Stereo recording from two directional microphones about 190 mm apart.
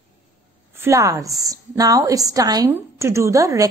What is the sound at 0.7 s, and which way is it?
A woman's voice, 15° right (ahead or behind).